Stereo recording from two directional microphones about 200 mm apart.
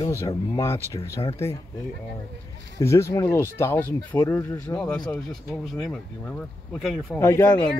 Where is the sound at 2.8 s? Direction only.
15° left (ahead or behind).